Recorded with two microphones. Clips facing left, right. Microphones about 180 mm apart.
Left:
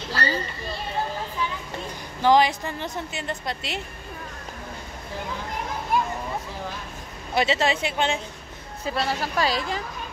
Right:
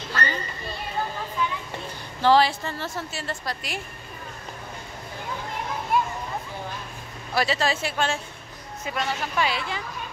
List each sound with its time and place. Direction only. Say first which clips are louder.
0.1 s children playing: left 2 dB; 35° left (ahead or behind)
2.2 s a woman's voice: even; 15° left (ahead or behind)
7.3 s a woman's voice: left 2 dB; 20° left (ahead or behind)
8.8 s a woman's voice: left 3 dB; 35° left (ahead or behind)